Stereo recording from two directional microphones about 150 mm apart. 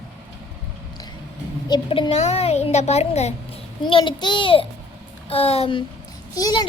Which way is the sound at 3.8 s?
35° left (ahead or behind).